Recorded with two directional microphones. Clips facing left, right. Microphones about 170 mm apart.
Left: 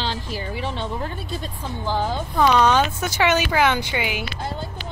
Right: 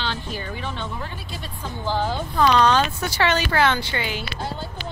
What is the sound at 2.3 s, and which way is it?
Speech, 10° left (ahead or behind).